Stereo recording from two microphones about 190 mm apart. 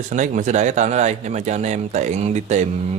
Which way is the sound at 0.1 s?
40° right (ahead or behind).